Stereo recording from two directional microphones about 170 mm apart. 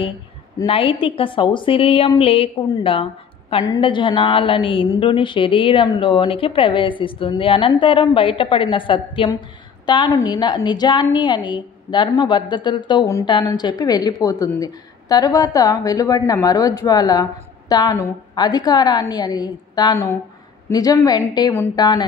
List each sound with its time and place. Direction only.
0.7 s a woman's voice: 30° left (ahead or behind)